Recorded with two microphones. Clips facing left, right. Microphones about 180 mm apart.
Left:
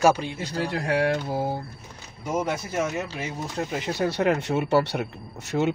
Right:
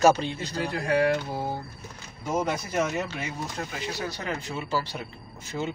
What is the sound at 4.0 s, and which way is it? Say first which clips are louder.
Speech: left 13 dB; 70° left (ahead or behind).